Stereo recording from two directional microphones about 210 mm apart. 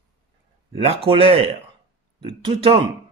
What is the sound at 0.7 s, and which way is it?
Speech, 25° right (ahead or behind).